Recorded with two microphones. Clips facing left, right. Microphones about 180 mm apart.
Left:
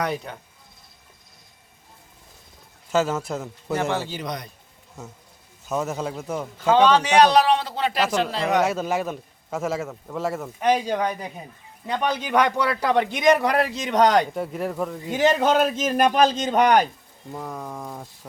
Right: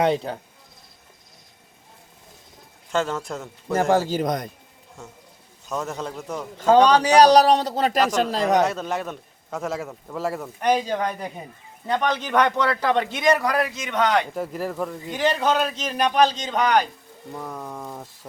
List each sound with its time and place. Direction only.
0.0 s speech: 30° right (ahead or behind)
2.9 s a man's voice: 5° left (ahead or behind)
3.8 s a man's voice: 40° right (ahead or behind)
5.6 s a man's voice: 5° left (ahead or behind)
6.6 s a man's voice: 40° right (ahead or behind)
8.6 s a man's voice: 5° left (ahead or behind); by 14.3 s 40° left (ahead or behind)
14.3 s a man's voice: centre (ahead or behind)
15.2 s a man's voice: 45° left (ahead or behind)
17.3 s a man's voice: centre (ahead or behind)